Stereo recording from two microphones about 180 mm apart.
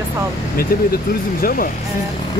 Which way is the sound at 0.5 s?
55° left (ahead or behind).